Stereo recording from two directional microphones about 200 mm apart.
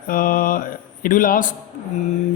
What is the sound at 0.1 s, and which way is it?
Speech, 45° left (ahead or behind).